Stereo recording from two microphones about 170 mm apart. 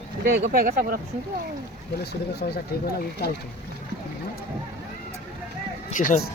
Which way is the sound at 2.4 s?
65° left (ahead or behind).